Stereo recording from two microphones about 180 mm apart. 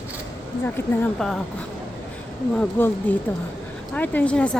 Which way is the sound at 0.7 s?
10° left (ahead or behind).